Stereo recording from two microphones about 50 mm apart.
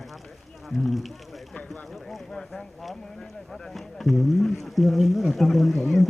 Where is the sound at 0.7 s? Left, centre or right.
Centre.